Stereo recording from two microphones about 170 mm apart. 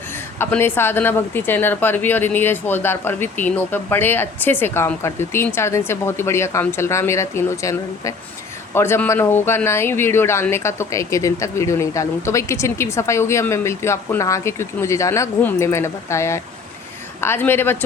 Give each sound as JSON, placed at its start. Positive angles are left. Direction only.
{"t": 0.3, "sound": "a woman's voice", "side_deg": 15}